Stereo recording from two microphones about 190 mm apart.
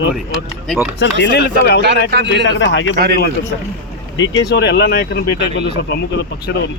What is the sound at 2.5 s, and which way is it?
Speech, 70° left (ahead or behind).